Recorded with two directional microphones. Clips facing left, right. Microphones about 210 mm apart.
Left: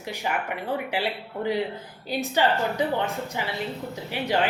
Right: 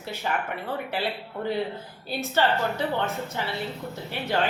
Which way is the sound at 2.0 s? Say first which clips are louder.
Left 1 dB; 15° left (ahead or behind).